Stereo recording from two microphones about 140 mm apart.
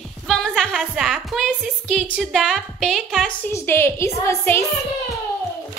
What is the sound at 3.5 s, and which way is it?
A woman's voice, 15° left (ahead or behind).